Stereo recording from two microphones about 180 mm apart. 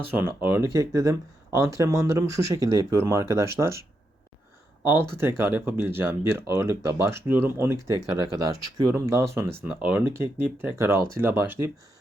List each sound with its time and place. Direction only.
0.1 s speech: 10° right (ahead or behind)